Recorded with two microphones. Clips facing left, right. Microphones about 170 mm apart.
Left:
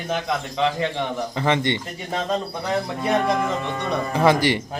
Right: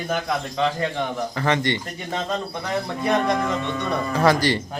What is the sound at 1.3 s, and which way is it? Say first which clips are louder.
Speech: left 1 dB; 20° left (ahead or behind).